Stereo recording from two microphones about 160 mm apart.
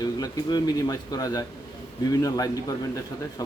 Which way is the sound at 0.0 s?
25° left (ahead or behind).